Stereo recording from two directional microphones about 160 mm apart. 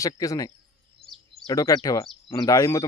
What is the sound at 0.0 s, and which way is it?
Speech, 20° left (ahead or behind).